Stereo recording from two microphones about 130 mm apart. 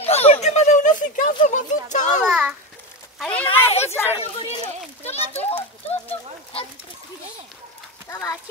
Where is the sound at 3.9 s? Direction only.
15° left (ahead or behind).